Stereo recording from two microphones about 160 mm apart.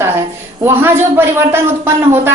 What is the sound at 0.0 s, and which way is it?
Speech, 15° right (ahead or behind).